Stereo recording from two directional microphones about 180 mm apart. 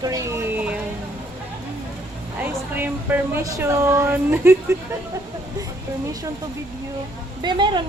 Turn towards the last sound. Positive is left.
turn(degrees=-25)  # may be behind; listen again after turning